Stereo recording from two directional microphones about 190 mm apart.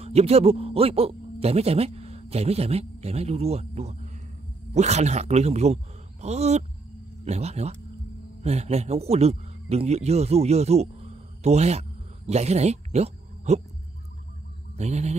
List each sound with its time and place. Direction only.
0.0 s a man's voice: 35° right (ahead or behind)
14.8 s a man's voice: 35° right (ahead or behind)